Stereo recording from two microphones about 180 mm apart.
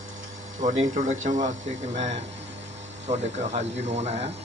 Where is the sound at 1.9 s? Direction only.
40° right (ahead or behind).